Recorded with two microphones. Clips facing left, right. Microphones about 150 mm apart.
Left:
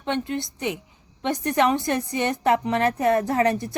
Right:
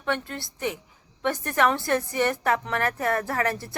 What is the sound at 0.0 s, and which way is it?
A woman's voice, 20° left (ahead or behind).